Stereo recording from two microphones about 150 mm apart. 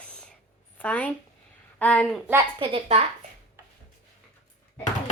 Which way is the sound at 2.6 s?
40° right (ahead or behind).